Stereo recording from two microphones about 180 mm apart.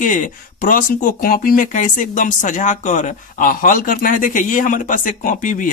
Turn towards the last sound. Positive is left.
turn(degrees=45)  # may be behind; listen again after turning